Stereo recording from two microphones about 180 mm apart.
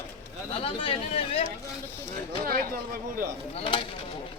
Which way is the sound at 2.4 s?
55° right (ahead or behind).